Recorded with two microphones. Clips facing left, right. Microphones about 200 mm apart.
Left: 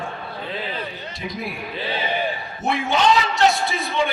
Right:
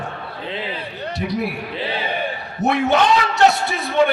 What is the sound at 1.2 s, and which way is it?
Speech, 65° right (ahead or behind).